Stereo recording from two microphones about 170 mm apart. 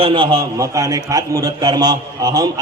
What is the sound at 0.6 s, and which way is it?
A man's voice, 20° right (ahead or behind).